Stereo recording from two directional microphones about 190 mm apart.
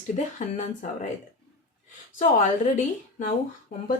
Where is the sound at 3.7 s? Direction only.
45° left (ahead or behind).